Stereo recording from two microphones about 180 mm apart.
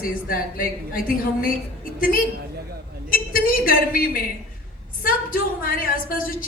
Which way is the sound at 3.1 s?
55° left (ahead or behind).